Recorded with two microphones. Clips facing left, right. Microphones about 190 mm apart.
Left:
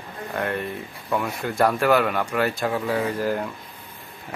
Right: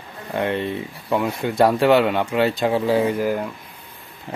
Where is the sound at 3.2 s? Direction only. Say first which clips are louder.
Right 3 dB; 10° right (ahead or behind).